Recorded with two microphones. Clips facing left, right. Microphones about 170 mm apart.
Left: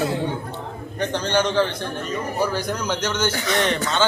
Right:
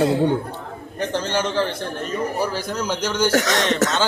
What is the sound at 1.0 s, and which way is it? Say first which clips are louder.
A man's voice: left 1 dB; 5° right (ahead or behind).